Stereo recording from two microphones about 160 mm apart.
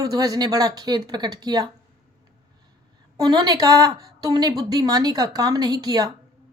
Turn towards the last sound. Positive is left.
turn(degrees=-25)  # may be behind; listen again after turning